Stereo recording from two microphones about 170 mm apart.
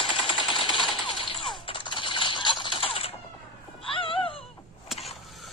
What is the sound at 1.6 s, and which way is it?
Coin, 30° left (ahead or behind).